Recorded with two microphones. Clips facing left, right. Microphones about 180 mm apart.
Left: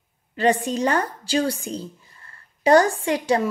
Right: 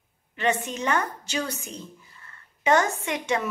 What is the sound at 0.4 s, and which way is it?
A woman's voice, 35° left (ahead or behind).